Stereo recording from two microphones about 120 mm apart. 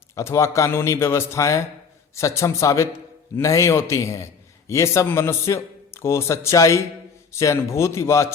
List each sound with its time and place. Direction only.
0.2 s a man's voice: 25° left (ahead or behind)